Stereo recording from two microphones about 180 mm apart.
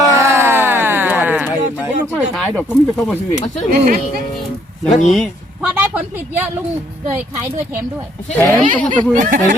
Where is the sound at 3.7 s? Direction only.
50° right (ahead or behind).